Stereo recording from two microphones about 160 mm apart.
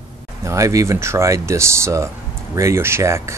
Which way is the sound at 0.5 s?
20° right (ahead or behind).